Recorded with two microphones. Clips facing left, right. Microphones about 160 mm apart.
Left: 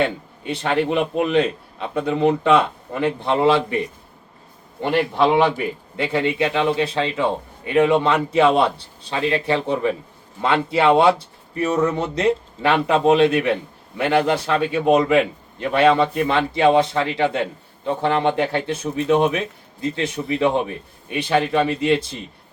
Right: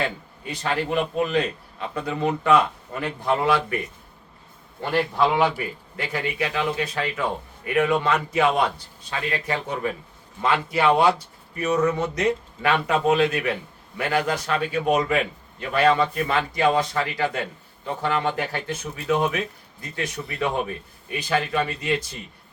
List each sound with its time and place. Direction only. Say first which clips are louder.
0.0 s a man's voice: left 6 dB; 25° left (ahead or behind)
4.8 s a man's voice: left 4 dB; 25° left (ahead or behind)